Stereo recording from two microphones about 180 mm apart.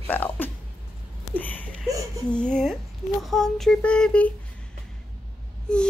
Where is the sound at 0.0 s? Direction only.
10° left (ahead or behind).